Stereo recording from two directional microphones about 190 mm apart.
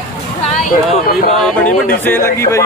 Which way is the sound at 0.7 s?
50° left (ahead or behind).